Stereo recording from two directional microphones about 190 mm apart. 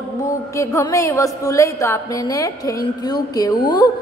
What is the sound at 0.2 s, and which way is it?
A woman's voice, 15° left (ahead or behind).